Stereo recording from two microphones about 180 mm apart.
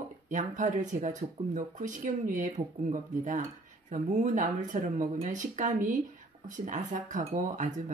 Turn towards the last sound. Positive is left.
turn(degrees=-45)  # may be behind; listen again after turning